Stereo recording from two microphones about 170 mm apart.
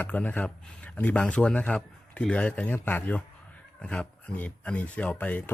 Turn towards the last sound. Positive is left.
turn(degrees=10)  # may be behind; listen again after turning